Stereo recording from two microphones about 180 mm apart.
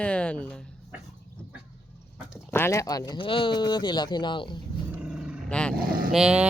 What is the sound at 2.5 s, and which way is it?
Speech, 15° left (ahead or behind).